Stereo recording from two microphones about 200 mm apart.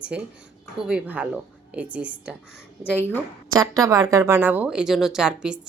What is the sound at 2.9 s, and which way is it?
Speech, 10° left (ahead or behind).